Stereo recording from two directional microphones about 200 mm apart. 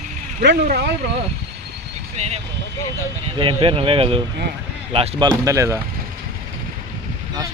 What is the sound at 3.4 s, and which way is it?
Speech, 25° right (ahead or behind).